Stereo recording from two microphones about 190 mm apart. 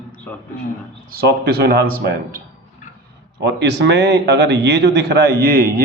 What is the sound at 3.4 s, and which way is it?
A man's voice, 65° right (ahead or behind).